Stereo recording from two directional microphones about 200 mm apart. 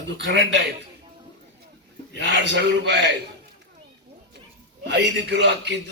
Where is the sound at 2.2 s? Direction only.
60° right (ahead or behind).